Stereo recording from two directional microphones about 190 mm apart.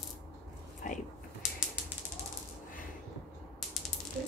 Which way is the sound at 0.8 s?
45° left (ahead or behind).